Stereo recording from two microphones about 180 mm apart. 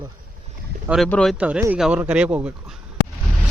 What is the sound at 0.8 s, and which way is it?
Speech, 5° right (ahead or behind).